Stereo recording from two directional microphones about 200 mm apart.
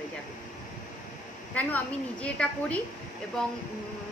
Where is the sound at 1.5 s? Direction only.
5° left (ahead or behind).